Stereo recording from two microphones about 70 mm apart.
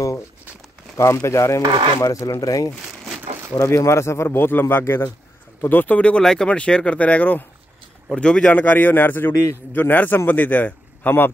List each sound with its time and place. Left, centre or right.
0.9 s speech: left
3.2 s crumpling: right
3.5 s a man's voice: left
9.3 s speech: left
9.7 s a man's voice: left